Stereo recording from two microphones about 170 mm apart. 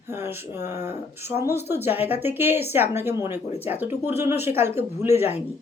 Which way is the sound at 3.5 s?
35° left (ahead or behind).